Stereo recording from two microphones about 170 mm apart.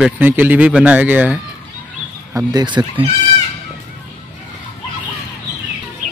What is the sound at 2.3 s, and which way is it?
Speech, 25° right (ahead or behind).